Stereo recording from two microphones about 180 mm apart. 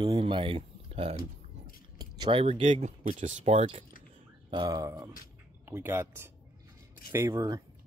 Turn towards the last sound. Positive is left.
turn(degrees=-20)  # may be behind; listen again after turning